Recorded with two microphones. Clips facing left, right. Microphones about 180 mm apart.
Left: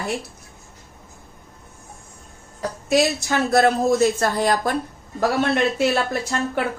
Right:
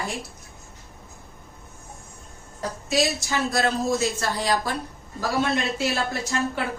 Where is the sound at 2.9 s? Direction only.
55° left (ahead or behind).